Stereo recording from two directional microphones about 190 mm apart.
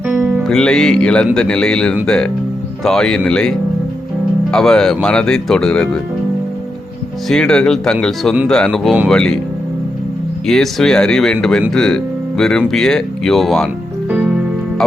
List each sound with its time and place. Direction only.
0.1 s music: 10° right (ahead or behind)
0.4 s speech: 5° left (ahead or behind)
4.5 s speech: 5° left (ahead or behind)
7.3 s speech: 5° left (ahead or behind)
10.4 s speech: centre (ahead or behind)